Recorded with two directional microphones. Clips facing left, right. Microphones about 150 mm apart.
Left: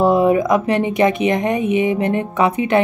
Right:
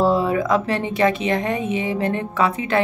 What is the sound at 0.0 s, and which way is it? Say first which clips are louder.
A woman's voice: left 5 dB; 15° left (ahead or behind).